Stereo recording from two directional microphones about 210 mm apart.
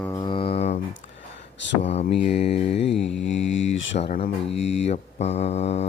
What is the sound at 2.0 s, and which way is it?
Mantra, 45° left (ahead or behind).